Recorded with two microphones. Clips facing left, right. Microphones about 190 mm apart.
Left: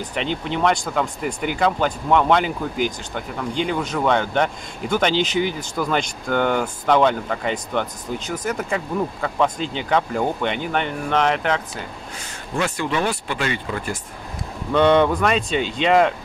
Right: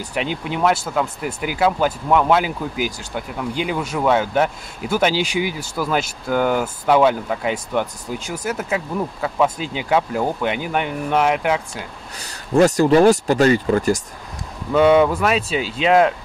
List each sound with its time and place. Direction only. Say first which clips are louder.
0.0 s speech: right 1 dB; 10° right (ahead or behind)
12.2 s speech: right 10 dB; 40° right (ahead or behind)
14.7 s speech: right 2 dB; 5° right (ahead or behind)